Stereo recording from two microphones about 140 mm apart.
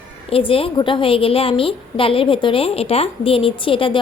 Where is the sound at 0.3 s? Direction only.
40° left (ahead or behind).